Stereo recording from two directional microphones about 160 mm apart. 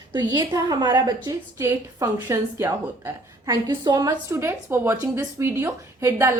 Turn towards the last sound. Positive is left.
turn(degrees=-15)  # may be behind; listen again after turning